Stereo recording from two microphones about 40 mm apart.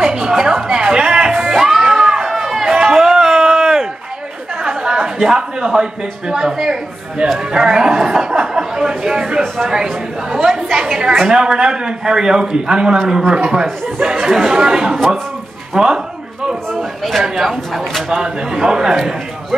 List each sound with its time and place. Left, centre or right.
0.0 s a sound: centre
1.5 s crowd: centre
2.7 s a sound: centre
4.6 s chatter: right
5.2 s a man's voice: centre
14.1 s a man's voice: centre
16.7 s a man's voice: centre
17.4 s a man's voice: centre
18.1 s a man's voice: centre